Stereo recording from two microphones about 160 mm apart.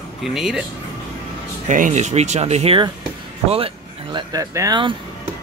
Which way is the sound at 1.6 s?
50° right (ahead or behind).